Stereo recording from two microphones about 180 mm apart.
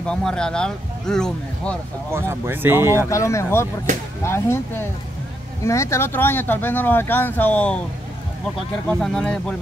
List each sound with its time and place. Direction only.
0.0 s speech: 5° left (ahead or behind)
2.0 s speech: 15° right (ahead or behind)
3.1 s speech: 15° left (ahead or behind)
8.8 s speech: 5° left (ahead or behind)